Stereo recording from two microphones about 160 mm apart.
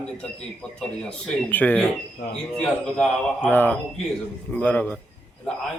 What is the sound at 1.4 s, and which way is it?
Speech, 10° left (ahead or behind).